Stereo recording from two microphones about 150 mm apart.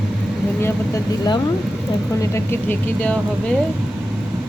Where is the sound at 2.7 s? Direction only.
10° left (ahead or behind).